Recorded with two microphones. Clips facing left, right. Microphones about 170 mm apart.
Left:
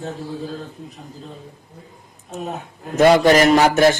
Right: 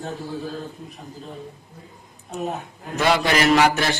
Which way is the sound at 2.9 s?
45° left (ahead or behind).